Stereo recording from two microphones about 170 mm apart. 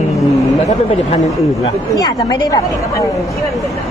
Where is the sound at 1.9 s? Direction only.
20° left (ahead or behind).